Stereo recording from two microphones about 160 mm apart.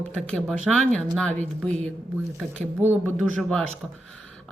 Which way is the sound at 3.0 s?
5° left (ahead or behind).